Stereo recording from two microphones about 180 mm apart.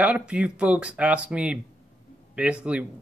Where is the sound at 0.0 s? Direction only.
5° right (ahead or behind).